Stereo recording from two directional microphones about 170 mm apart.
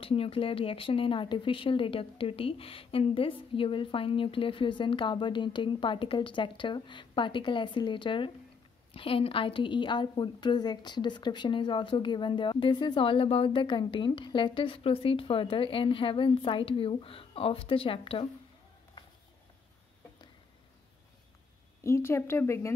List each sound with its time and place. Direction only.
0.0 s a woman's voice: 35° left (ahead or behind)
21.8 s speech: 15° left (ahead or behind)